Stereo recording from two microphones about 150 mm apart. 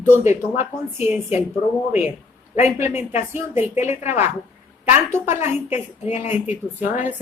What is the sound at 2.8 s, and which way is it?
Speech, 15° right (ahead or behind).